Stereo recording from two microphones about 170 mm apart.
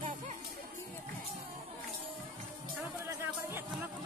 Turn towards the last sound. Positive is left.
turn(degrees=-10)  # may be behind; listen again after turning